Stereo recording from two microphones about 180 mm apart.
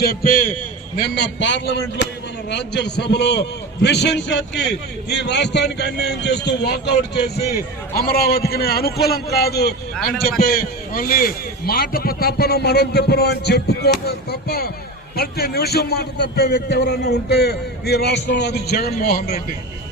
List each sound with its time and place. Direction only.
0.0 s a man's voice: 55° left (ahead or behind)
1.1 s a man's voice: 75° left (ahead or behind); by 19.5 s 55° left (ahead or behind)